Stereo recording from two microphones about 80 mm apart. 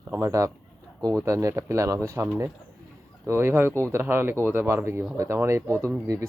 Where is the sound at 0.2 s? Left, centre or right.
Right.